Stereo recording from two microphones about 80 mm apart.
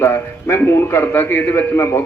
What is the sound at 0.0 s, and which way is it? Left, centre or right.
A man's voice, left.